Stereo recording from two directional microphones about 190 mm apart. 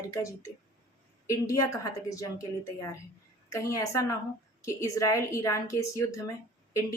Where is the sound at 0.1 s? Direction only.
15° left (ahead or behind).